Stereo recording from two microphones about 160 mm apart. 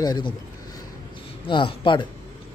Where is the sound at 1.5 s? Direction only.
30° left (ahead or behind).